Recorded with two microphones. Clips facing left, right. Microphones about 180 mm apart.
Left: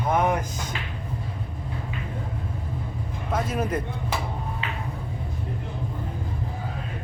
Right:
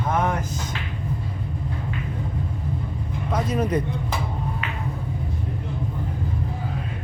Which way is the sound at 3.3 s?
5° left (ahead or behind).